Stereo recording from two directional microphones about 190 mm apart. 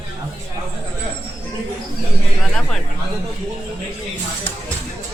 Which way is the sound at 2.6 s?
Centre (ahead or behind).